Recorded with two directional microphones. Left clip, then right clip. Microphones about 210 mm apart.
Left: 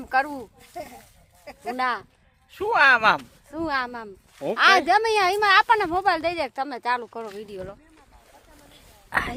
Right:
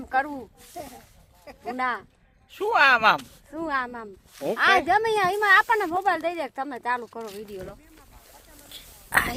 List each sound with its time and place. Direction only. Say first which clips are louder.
0.0 s speech: left 2 dB; centre (ahead or behind)
0.7 s speech: left 2 dB; 45° left (ahead or behind)
1.7 s a woman's voice: left 2 dB; centre (ahead or behind)
2.5 s speech: left 1 dB; 10° right (ahead or behind)
3.5 s a woman's voice: left 1 dB; 5° left (ahead or behind)
8.7 s a sound: right 3 dB; 25° right (ahead or behind)